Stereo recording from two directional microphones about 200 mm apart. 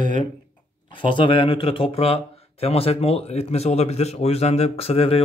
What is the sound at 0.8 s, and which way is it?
Speech, 25° left (ahead or behind).